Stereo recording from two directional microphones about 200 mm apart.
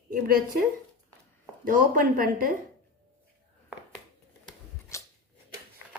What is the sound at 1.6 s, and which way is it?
Speech, 45° right (ahead or behind).